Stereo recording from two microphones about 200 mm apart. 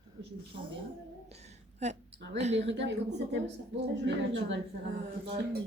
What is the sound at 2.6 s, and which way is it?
Speech, 60° right (ahead or behind).